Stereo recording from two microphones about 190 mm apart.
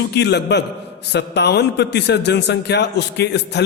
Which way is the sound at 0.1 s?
60° left (ahead or behind).